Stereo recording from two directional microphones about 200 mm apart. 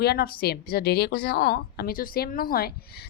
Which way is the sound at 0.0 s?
55° left (ahead or behind).